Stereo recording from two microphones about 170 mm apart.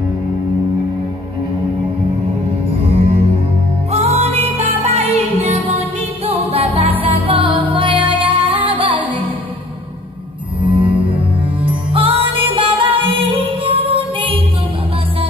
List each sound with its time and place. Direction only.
2.8 s music: 35° right (ahead or behind)
10.6 s music: 30° right (ahead or behind)